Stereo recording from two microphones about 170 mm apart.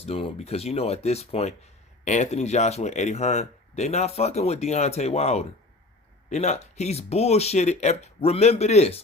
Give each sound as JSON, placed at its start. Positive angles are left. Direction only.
{"t": 0.0, "sound": "speech", "side_deg": 35}